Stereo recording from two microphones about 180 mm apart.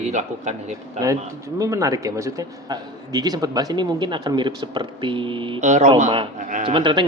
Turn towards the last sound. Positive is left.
turn(degrees=-25)  # may be behind; listen again after turning